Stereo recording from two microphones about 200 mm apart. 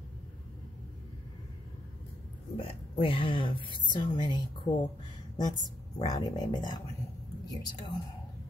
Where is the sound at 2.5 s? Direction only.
25° left (ahead or behind).